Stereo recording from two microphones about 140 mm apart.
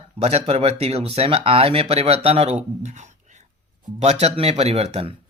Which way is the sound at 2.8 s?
55° right (ahead or behind).